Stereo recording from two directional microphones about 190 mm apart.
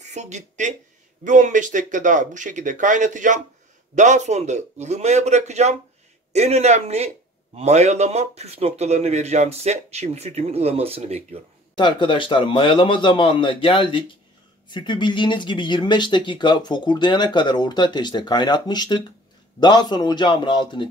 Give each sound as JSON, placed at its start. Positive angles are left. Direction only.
{"t": 0.1, "sound": "speech", "side_deg": -35}
{"t": 11.7, "sound": "speech", "side_deg": 25}